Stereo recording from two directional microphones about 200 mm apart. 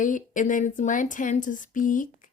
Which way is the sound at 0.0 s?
40° left (ahead or behind).